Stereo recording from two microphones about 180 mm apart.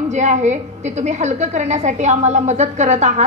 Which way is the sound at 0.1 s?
40° right (ahead or behind).